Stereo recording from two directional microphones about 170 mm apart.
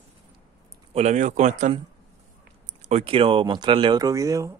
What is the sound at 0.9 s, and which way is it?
Speech, 45° right (ahead or behind).